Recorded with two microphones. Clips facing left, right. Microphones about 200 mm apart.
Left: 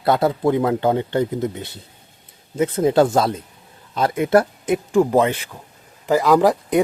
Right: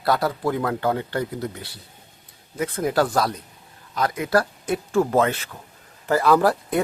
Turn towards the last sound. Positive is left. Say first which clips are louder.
# left 4 dB
turn(degrees=15)  # may be behind; listen again after turning